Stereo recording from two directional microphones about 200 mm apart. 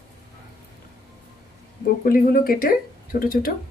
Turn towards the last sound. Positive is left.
turn(degrees=45)  # may be behind; listen again after turning